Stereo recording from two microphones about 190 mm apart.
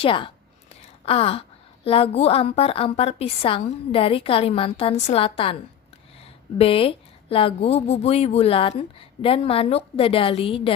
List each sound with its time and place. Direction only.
0.0 s a woman's voice: 25° left (ahead or behind)
6.6 s speech: 30° left (ahead or behind)